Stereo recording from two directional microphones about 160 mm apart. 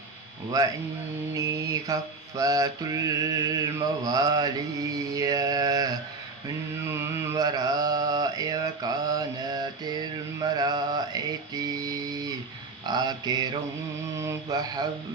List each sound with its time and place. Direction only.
1.3 s mantra: 20° right (ahead or behind)
6.9 s mantra: 20° right (ahead or behind)